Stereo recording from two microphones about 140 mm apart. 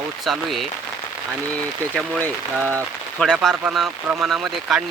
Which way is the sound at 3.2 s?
5° left (ahead or behind).